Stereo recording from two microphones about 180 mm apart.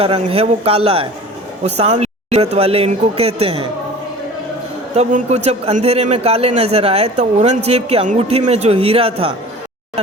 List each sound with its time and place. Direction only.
0.0 s a man's voice: 30° right (ahead or behind)
4.9 s a man's voice: 40° right (ahead or behind)